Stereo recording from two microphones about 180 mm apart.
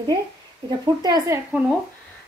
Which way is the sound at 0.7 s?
20° right (ahead or behind).